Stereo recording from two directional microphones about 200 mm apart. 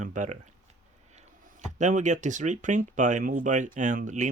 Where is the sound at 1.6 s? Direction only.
35° right (ahead or behind).